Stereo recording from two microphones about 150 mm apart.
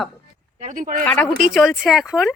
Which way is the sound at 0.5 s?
55° right (ahead or behind).